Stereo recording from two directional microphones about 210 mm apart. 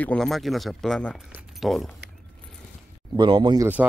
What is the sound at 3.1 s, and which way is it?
Speech, 25° right (ahead or behind).